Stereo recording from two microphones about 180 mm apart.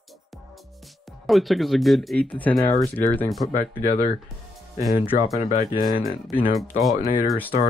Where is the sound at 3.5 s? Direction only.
40° left (ahead or behind).